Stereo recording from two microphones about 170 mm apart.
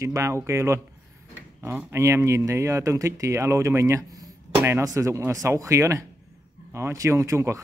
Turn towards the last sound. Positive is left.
turn(degrees=-15)  # may be behind; listen again after turning